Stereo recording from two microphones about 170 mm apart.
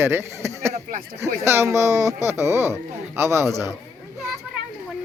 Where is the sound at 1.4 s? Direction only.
15° right (ahead or behind).